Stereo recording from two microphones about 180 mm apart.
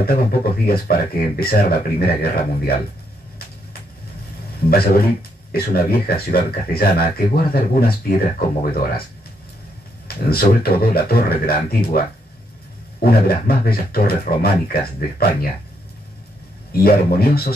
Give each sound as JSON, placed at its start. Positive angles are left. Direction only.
{"t": 0.0, "sound": "speech", "side_deg": 55}
{"t": 4.6, "sound": "speech", "side_deg": 55}
{"t": 10.0, "sound": "speech", "side_deg": 60}
{"t": 13.0, "sound": "speech", "side_deg": 60}
{"t": 16.7, "sound": "speech", "side_deg": 60}